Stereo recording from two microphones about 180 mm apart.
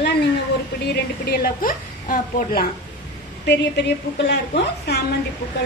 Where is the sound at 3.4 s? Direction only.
70° left (ahead or behind).